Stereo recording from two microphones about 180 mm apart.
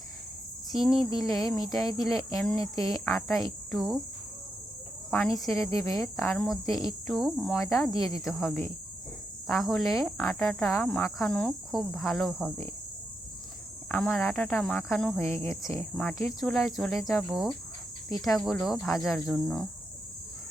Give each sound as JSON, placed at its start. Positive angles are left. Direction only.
{"t": 0.7, "sound": "speech", "side_deg": 0}
{"t": 1.2, "sound": "speech", "side_deg": 20}
{"t": 1.5, "sound": "cricket", "side_deg": 0}
{"t": 2.3, "sound": "speech", "side_deg": 10}
{"t": 2.6, "sound": "speech", "side_deg": 20}
{"t": 2.9, "sound": "cricket", "side_deg": 0}
{"t": 5.1, "sound": "cricket", "side_deg": 5}
{"t": 5.8, "sound": "speech", "side_deg": 15}
{"t": 6.1, "sound": "cricket", "side_deg": 0}
{"t": 13.8, "sound": "cricket", "side_deg": 5}
{"t": 15.7, "sound": "speech", "side_deg": 10}
{"t": 16.2, "sound": "cricket", "side_deg": 0}